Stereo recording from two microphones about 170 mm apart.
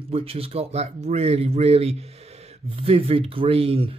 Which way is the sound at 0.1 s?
35° right (ahead or behind).